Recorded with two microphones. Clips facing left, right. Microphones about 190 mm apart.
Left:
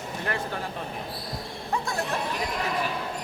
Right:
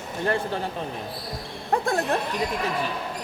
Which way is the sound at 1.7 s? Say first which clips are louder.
Right 7 dB; 55° right (ahead or behind).